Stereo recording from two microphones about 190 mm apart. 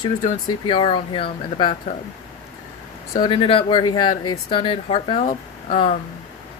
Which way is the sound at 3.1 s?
25° left (ahead or behind).